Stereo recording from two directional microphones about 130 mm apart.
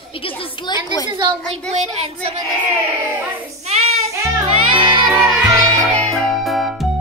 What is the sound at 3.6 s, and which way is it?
Child singing, 55° right (ahead or behind).